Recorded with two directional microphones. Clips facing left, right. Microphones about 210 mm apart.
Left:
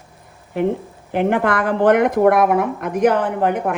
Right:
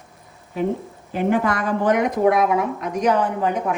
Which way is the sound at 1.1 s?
65° left (ahead or behind).